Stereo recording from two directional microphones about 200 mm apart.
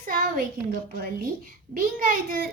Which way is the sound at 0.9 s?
45° right (ahead or behind).